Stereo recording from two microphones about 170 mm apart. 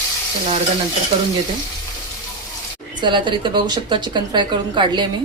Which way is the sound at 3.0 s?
30° right (ahead or behind).